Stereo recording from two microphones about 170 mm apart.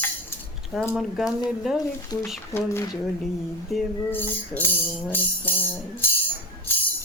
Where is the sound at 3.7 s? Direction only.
Centre (ahead or behind).